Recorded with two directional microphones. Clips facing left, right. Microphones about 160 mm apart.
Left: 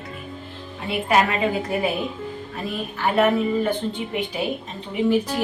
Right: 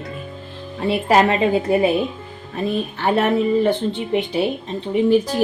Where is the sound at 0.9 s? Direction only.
30° right (ahead or behind).